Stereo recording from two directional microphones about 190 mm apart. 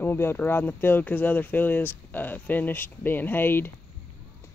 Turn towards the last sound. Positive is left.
turn(degrees=10)  # may be behind; listen again after turning